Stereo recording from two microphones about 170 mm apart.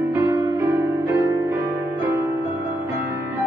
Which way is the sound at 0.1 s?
15° right (ahead or behind).